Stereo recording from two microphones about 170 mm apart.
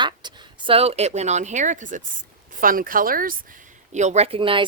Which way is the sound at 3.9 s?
40° right (ahead or behind).